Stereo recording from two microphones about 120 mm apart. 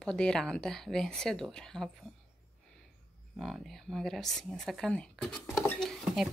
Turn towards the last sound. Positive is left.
turn(degrees=0)  # may be behind; listen again after turning